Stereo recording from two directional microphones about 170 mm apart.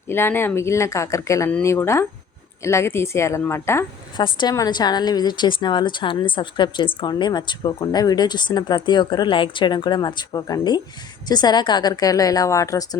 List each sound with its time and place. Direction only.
0.1 s speech: 15° left (ahead or behind)
4.2 s a woman's voice: 25° left (ahead or behind)